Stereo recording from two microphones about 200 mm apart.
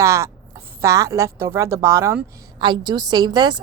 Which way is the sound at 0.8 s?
15° right (ahead or behind).